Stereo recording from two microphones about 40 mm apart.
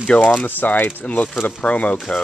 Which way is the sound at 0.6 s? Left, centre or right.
Left.